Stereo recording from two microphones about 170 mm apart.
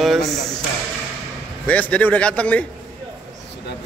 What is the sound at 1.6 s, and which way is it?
A man's voice, 10° left (ahead or behind).